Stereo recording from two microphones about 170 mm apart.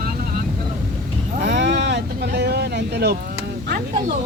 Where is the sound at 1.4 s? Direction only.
90° right.